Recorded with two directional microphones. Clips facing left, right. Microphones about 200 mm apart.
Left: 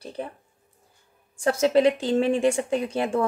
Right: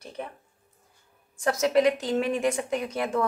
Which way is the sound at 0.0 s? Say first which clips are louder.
Left 4 dB; 30° left (ahead or behind).